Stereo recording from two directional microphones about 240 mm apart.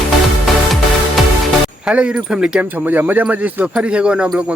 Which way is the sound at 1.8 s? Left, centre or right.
Centre.